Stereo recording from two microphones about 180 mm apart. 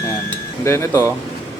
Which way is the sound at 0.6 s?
15° left (ahead or behind).